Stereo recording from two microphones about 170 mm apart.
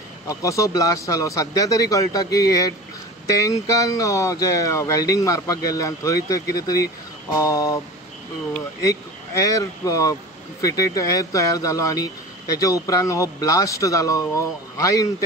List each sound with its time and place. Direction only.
0.3 s speech: 20° left (ahead or behind)
8.8 s speech: 20° left (ahead or behind)